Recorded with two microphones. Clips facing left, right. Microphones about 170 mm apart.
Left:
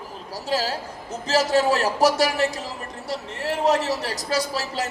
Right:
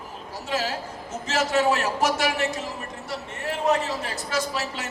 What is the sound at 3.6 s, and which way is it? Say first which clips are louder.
Speech: left 2 dB; 75° left (ahead or behind).